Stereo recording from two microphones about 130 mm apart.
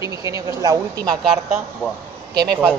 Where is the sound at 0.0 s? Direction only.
25° right (ahead or behind).